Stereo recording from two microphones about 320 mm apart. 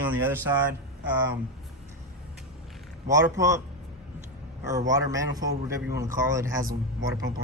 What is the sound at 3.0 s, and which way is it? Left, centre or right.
Speech, centre.